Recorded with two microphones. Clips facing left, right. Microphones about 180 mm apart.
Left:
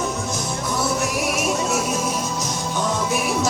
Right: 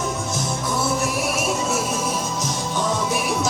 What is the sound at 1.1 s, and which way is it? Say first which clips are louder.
Music: left 1 dB; centre (ahead or behind).